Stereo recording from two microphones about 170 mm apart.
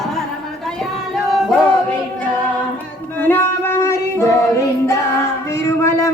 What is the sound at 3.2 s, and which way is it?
Music, 15° left (ahead or behind).